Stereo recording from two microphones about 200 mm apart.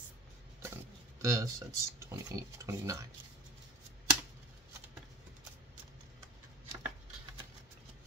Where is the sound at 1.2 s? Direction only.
15° right (ahead or behind).